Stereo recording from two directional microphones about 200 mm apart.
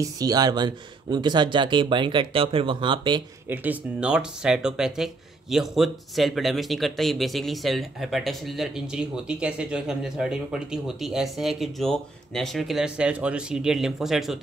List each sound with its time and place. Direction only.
0.0 s speech: 20° right (ahead or behind)
3.4 s speech: 10° right (ahead or behind)